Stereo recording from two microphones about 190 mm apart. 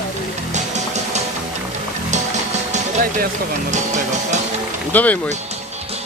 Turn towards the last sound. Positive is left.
turn(degrees=10)  # may be behind; listen again after turning